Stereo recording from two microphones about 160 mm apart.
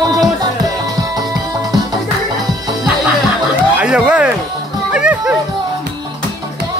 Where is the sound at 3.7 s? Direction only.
5° right (ahead or behind).